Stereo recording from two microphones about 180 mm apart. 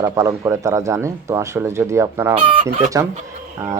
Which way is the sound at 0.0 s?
15° right (ahead or behind).